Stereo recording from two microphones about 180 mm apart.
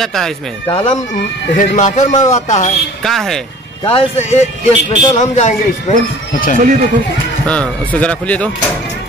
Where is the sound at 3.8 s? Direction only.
30° left (ahead or behind).